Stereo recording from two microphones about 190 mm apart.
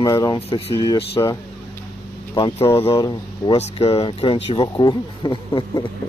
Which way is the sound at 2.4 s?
25° left (ahead or behind).